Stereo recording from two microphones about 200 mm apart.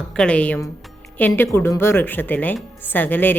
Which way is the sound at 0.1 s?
5° left (ahead or behind).